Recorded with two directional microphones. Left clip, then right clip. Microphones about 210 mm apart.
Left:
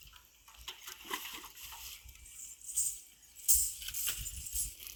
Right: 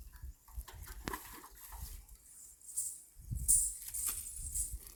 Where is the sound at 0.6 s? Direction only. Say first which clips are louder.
Left 1 dB; 5° right (ahead or behind).